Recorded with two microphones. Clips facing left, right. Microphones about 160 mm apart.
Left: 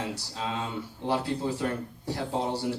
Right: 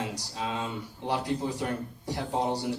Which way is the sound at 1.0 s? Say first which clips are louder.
Left 1 dB; 15° right (ahead or behind).